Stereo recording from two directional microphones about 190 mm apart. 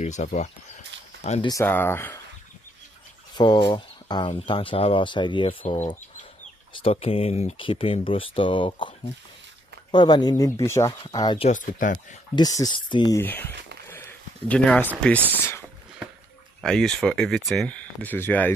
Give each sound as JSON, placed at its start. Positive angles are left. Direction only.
{"t": 0.0, "sound": "speech", "side_deg": 40}
{"t": 1.5, "sound": "speech", "side_deg": 10}
{"t": 3.3, "sound": "speech", "side_deg": 25}
{"t": 11.4, "sound": "speech", "side_deg": 40}
{"t": 12.4, "sound": "speech", "side_deg": 20}
{"t": 13.2, "sound": "a sound", "side_deg": 10}
{"t": 15.0, "sound": "speech", "side_deg": 10}
{"t": 16.6, "sound": "speech", "side_deg": 5}